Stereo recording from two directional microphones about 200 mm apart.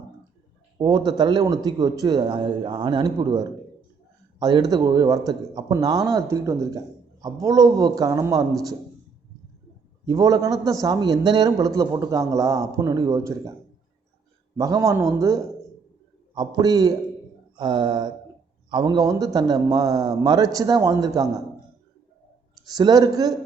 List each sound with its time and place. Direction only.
0.8 s a man's voice: 20° right (ahead or behind)
10.1 s a man's voice: 20° right (ahead or behind)
14.5 s a man's voice: 15° right (ahead or behind)
22.7 s a man's voice: 20° right (ahead or behind)